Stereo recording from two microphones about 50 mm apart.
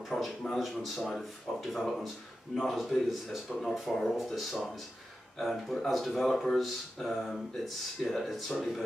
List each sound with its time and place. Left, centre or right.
0.1 s speech: centre
0.6 s speech: centre